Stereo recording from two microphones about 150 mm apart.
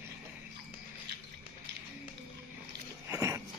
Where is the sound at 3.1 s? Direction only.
20° right (ahead or behind).